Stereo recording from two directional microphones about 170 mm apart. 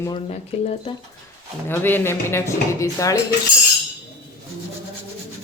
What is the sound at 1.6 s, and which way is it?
Speech, 10° left (ahead or behind).